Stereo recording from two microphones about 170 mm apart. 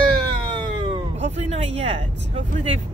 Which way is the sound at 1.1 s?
40° right (ahead or behind).